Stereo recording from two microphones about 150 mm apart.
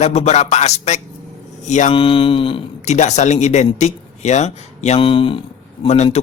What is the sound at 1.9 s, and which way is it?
Speech, 35° left (ahead or behind).